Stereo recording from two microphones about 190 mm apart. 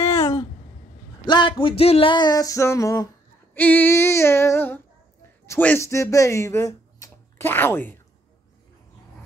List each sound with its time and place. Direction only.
1.2 s a sound: 25° left (ahead or behind)
3.5 s female singing: 10° left (ahead or behind)
5.5 s speech: 10° left (ahead or behind)